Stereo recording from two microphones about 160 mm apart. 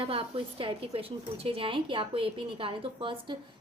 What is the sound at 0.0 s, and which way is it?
A woman's voice, 35° right (ahead or behind).